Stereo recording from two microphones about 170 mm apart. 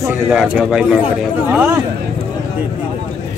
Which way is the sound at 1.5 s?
15° right (ahead or behind).